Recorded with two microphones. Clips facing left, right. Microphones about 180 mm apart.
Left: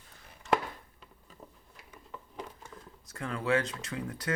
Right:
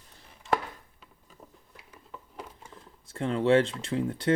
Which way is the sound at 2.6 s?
30° right (ahead or behind).